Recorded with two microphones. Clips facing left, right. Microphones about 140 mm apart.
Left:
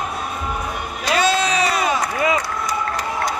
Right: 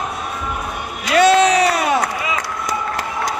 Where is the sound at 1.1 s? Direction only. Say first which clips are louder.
Right 6 dB; 70° right (ahead or behind).